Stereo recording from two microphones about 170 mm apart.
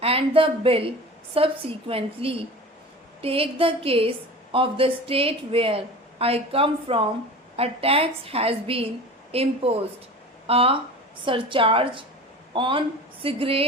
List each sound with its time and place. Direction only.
0.0 s speech: 35° right (ahead or behind)